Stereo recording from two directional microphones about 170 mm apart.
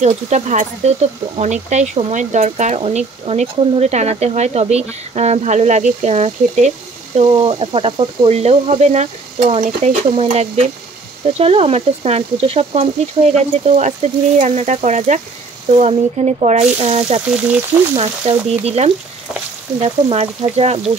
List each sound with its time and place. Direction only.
0.0 s speech: 45° right (ahead or behind)
7.2 s speech: 30° right (ahead or behind)
19.8 s speech: 35° right (ahead or behind)